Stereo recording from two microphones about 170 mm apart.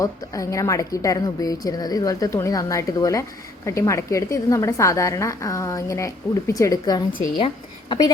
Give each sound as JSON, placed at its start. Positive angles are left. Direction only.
{"t": 0.0, "sound": "a woman's voice", "side_deg": 20}